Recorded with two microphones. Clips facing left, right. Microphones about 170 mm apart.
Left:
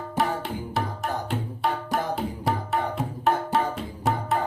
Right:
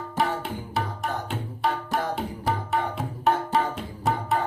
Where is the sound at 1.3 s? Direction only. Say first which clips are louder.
Even; centre (ahead or behind).